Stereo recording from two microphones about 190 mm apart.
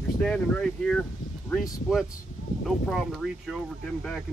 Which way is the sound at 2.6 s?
Centre (ahead or behind).